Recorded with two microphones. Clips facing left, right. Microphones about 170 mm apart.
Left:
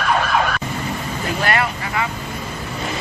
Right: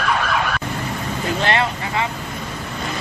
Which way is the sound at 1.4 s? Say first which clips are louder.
Even; 25° right (ahead or behind).